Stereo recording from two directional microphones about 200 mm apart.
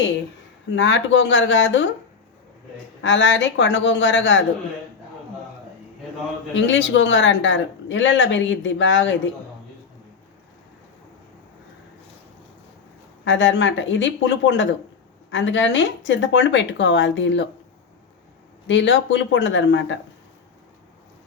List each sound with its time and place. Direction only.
0.8 s a woman's voice: 65° left (ahead or behind)
3.0 s a woman's voice: 65° left (ahead or behind)
6.5 s speech: 65° left (ahead or behind)
13.2 s a woman's voice: 65° left (ahead or behind)
18.7 s a woman's voice: 65° left (ahead or behind)